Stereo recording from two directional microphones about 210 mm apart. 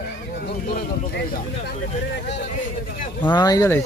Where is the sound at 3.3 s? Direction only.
20° left (ahead or behind).